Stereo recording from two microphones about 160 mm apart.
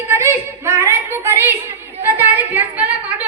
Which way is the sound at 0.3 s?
15° right (ahead or behind).